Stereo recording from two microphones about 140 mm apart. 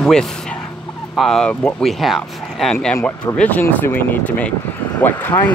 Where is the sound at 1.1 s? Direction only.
5° left (ahead or behind).